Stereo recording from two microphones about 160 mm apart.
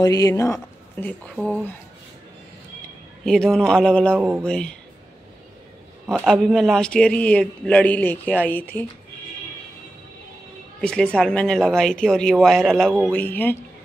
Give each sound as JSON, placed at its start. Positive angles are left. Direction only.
{"t": 0.0, "sound": "a man's voice", "side_deg": 20}
{"t": 3.3, "sound": "speech", "side_deg": 5}
{"t": 4.1, "sound": "mantra", "side_deg": -10}
{"t": 4.5, "sound": "speech", "side_deg": 5}
{"t": 6.0, "sound": "a man's voice", "side_deg": -10}
{"t": 6.3, "sound": "a man's voice", "side_deg": 0}
{"t": 10.8, "sound": "speech", "side_deg": 5}